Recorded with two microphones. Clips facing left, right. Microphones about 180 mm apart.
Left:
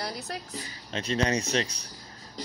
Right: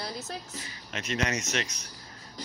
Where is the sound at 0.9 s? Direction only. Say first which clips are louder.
Left 4 dB; 30° left (ahead or behind).